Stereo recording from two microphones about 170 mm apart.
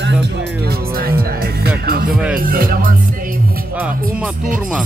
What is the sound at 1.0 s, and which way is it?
Music, 60° right (ahead or behind).